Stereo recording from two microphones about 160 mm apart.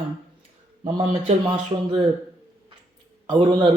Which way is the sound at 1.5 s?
30° right (ahead or behind).